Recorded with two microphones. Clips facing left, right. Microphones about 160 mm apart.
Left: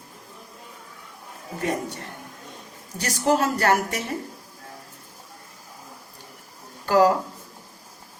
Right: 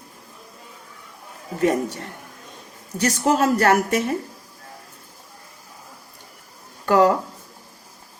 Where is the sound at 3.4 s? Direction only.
50° right (ahead or behind).